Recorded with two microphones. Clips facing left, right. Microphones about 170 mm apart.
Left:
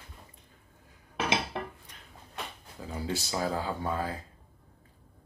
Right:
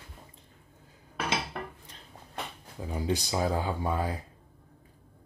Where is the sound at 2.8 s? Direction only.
15° right (ahead or behind).